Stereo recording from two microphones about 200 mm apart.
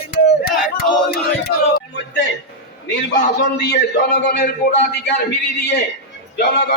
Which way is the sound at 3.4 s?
60° left (ahead or behind).